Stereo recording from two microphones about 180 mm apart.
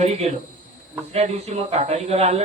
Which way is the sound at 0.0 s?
35° right (ahead or behind).